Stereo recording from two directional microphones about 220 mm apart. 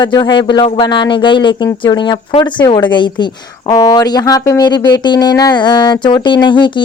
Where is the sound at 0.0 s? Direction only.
20° left (ahead or behind).